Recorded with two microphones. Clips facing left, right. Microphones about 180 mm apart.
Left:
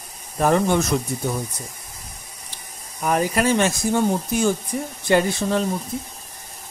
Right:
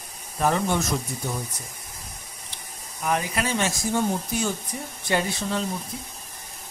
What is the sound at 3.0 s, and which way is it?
Speech, 45° left (ahead or behind).